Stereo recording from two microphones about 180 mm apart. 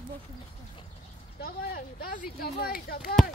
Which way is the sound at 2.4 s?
60° left (ahead or behind).